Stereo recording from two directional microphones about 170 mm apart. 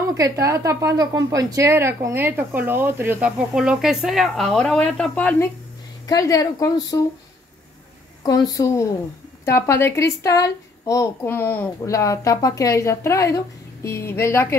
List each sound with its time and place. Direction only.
0.1 s speech: 20° right (ahead or behind); by 5.5 s 10° left (ahead or behind)
6.0 s speech: 20° left (ahead or behind)
8.3 s a woman's voice: 20° left (ahead or behind)